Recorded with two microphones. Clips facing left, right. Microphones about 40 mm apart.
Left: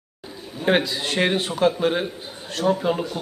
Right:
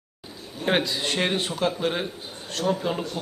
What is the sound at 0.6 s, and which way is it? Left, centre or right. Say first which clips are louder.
A man's voice: left 3 dB; centre.